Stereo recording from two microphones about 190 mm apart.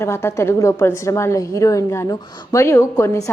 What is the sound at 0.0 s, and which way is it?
A woman's voice, 15° left (ahead or behind).